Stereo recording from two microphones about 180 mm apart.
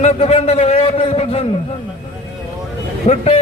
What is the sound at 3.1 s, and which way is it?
Speech, 40° left (ahead or behind).